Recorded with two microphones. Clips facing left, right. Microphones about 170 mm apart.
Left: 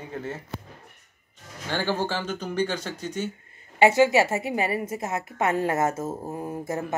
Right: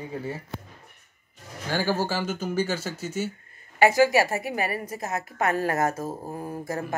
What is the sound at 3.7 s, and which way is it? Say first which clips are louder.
Speech: left 1 dB; 25° left (ahead or behind).